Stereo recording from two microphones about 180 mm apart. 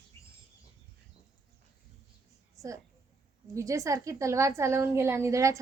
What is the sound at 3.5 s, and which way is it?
A woman's voice, 15° right (ahead or behind).